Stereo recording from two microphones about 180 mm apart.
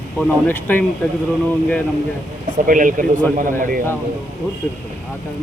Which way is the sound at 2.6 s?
50° right (ahead or behind).